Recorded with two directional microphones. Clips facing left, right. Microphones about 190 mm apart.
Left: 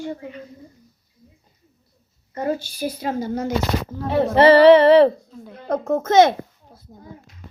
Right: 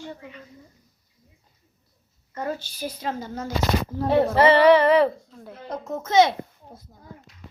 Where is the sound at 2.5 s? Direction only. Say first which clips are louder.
Left 6 dB; 10° left (ahead or behind).